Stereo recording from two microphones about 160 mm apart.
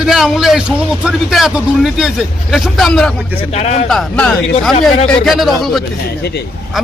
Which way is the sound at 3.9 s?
Centre (ahead or behind).